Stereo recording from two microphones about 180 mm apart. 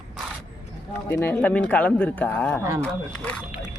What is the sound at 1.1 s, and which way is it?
Speech, 10° left (ahead or behind).